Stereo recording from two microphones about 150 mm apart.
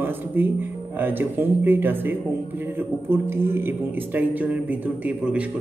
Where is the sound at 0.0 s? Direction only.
15° right (ahead or behind).